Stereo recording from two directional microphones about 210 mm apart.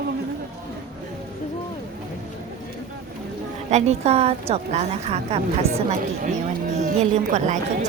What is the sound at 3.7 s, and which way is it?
A woman's voice, 30° right (ahead or behind).